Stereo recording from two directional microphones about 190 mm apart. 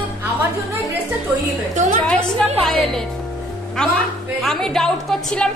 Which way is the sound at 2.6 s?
Centre (ahead or behind).